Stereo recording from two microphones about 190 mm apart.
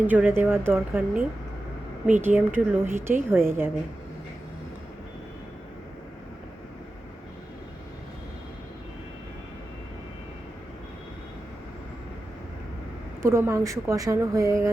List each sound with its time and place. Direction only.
0.1 s speech: 10° right (ahead or behind)
13.2 s speech: 15° right (ahead or behind)